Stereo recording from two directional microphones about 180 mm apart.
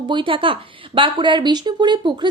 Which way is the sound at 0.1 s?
25° right (ahead or behind).